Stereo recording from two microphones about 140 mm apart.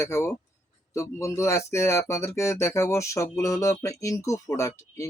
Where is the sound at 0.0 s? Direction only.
20° left (ahead or behind).